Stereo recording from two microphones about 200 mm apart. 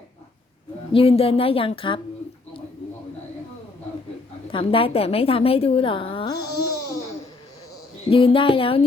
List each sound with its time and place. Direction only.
0.9 s speech: 30° left (ahead or behind)
4.4 s a woman's voice: 25° left (ahead or behind)
8.1 s speech: 25° left (ahead or behind)